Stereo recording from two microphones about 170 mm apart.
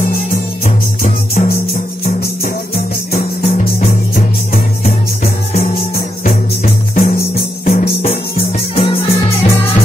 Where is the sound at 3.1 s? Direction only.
60° left (ahead or behind).